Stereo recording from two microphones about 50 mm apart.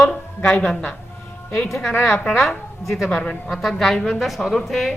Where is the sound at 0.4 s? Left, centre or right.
Centre.